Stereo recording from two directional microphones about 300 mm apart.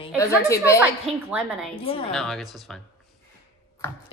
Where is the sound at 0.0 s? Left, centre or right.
Centre.